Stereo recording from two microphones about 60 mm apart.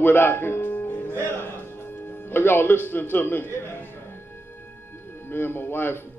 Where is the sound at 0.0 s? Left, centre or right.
Left.